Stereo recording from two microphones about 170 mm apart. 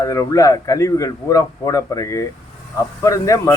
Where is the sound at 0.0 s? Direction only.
20° left (ahead or behind).